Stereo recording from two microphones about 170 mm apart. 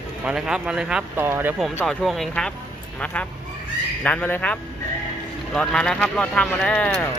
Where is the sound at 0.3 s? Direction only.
5° right (ahead or behind).